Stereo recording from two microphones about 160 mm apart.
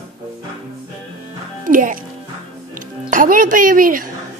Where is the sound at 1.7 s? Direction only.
55° right (ahead or behind).